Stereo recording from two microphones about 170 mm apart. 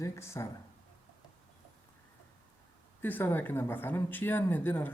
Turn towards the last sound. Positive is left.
turn(degrees=10)  # may be behind; listen again after turning